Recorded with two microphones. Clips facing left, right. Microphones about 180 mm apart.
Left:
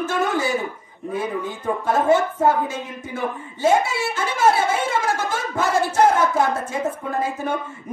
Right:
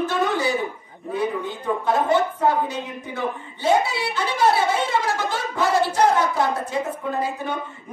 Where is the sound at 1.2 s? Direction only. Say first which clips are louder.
Right 2 dB; 45° left (ahead or behind).